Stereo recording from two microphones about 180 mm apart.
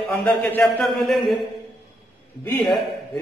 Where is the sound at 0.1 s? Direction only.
10° left (ahead or behind).